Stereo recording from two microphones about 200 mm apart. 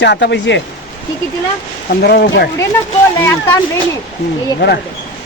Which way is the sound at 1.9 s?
55° left (ahead or behind).